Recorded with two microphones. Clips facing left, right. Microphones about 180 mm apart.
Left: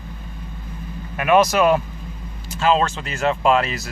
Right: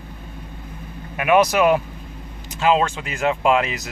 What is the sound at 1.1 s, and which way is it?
Speech, 15° right (ahead or behind).